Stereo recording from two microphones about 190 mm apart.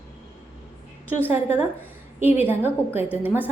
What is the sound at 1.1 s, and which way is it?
A woman's voice, 10° right (ahead or behind).